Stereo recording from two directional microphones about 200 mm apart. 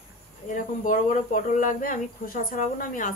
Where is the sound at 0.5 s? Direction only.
40° left (ahead or behind).